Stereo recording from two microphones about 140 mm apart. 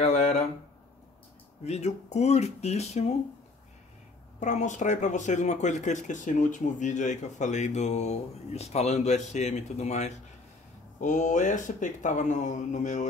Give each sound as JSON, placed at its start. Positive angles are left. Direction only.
{"t": 0.0, "sound": "a sound", "side_deg": 50}
{"t": 1.6, "sound": "speech", "side_deg": 55}
{"t": 4.4, "sound": "speech", "side_deg": 60}